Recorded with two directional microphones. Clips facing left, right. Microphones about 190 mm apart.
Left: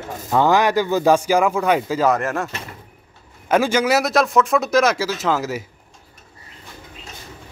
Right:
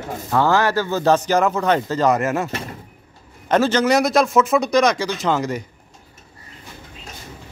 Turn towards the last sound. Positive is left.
turn(degrees=5)  # may be behind; listen again after turning